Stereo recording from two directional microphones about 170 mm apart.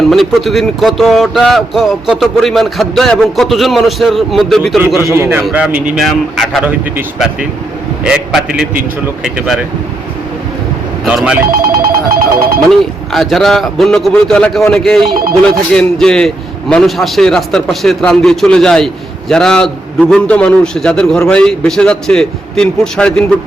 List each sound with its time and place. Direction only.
0.1 s speech: centre (ahead or behind)
5.1 s a man's voice: 15° right (ahead or behind)
11.0 s speech: 5° right (ahead or behind)
11.5 s telephone bell ringing: 60° right (ahead or behind)
13.1 s speech: centre (ahead or behind)
15.1 s speech: 60° right (ahead or behind)
15.7 s speech: 5° left (ahead or behind)